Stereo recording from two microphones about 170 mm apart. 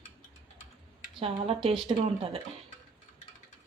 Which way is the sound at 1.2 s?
35° right (ahead or behind).